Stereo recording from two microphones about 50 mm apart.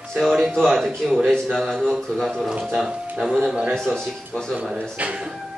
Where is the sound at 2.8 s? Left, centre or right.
Centre.